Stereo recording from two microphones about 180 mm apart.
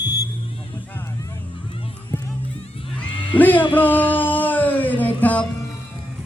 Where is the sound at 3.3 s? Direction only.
10° left (ahead or behind).